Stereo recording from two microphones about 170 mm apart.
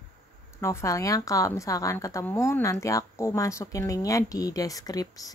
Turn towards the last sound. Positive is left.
turn(degrees=20)  # may be behind; listen again after turning